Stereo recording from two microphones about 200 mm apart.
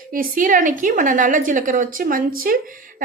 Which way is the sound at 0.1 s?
45° right (ahead or behind).